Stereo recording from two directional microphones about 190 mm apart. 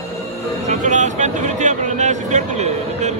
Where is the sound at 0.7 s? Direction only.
40° right (ahead or behind).